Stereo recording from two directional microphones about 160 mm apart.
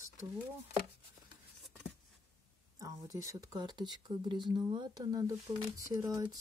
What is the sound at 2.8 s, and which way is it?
Speech, 20° right (ahead or behind).